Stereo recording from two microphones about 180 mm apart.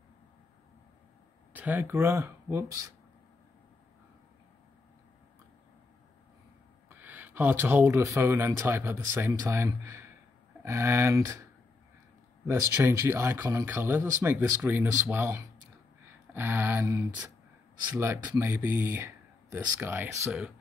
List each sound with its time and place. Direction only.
1.5 s speech: 10° right (ahead or behind)
6.9 s speech: 10° right (ahead or behind)
12.4 s speech: 15° right (ahead or behind)